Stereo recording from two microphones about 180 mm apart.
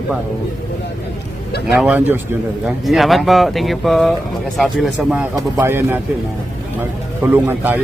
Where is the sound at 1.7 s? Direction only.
5° right (ahead or behind).